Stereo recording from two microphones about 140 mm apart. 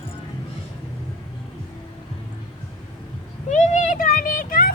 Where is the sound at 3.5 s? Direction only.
60° left (ahead or behind); by 4.7 s 80° left.